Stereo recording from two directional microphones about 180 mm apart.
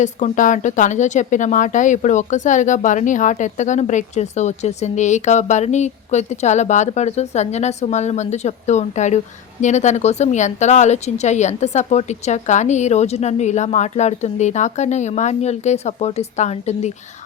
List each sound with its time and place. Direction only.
0.0 s speech: 45° left (ahead or behind)